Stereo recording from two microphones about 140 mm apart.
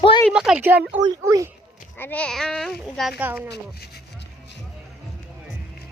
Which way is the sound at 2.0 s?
10° left (ahead or behind).